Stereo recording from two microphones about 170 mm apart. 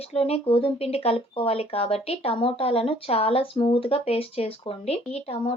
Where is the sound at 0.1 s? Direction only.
35° left (ahead or behind).